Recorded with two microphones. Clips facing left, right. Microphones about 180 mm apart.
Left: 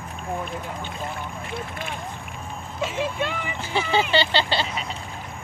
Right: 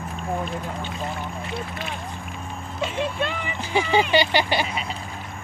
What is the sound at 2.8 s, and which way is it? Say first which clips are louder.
Speech: even; 10° left (ahead or behind).